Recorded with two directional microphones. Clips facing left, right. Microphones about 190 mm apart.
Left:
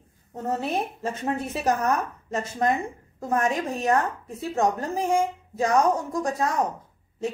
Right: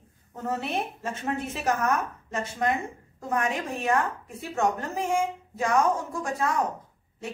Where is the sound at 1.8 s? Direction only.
40° left (ahead or behind).